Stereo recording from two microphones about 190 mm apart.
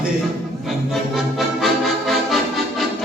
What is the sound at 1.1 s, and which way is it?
Accordion, centre (ahead or behind).